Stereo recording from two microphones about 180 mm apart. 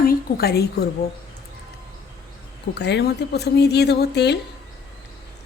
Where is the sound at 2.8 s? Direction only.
70° left (ahead or behind).